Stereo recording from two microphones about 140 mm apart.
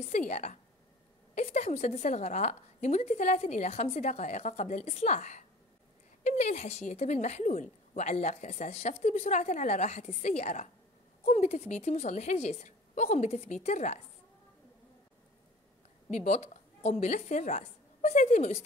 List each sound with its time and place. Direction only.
0.3 s a woman's voice: 55° left (ahead or behind)
16.1 s a woman's voice: 55° left (ahead or behind)